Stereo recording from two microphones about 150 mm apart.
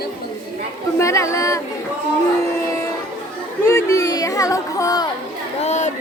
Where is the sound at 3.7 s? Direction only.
15° left (ahead or behind).